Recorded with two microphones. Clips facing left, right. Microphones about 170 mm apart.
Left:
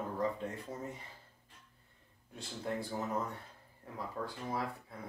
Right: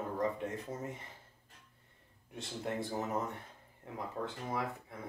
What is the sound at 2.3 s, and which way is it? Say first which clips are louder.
Speech: even; 20° right (ahead or behind).